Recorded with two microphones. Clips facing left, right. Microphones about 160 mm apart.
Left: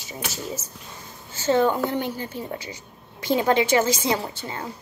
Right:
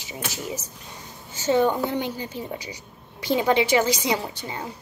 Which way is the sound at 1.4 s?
15° right (ahead or behind).